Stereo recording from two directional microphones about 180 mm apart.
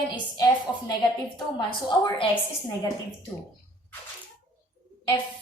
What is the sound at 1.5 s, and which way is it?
Speech, 25° left (ahead or behind).